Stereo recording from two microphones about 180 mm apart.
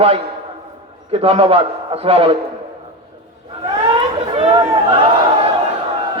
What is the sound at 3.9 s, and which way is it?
Chatter, 30° right (ahead or behind).